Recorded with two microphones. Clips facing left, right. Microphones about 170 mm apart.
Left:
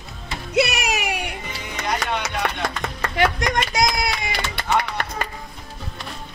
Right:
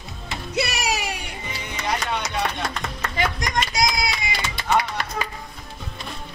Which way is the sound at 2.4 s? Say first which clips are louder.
Left 2 dB; 65° left (ahead or behind).